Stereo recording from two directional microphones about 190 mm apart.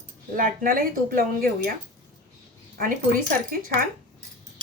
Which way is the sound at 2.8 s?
45° right (ahead or behind).